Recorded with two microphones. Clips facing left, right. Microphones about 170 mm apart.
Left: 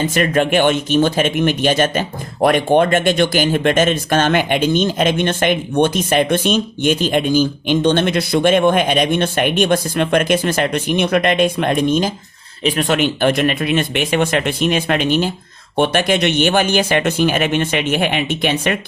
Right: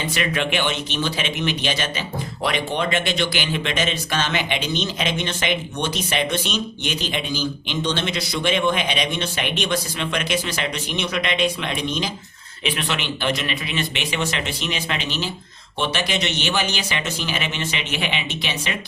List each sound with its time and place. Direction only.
0.0 s speech: 45° left (ahead or behind)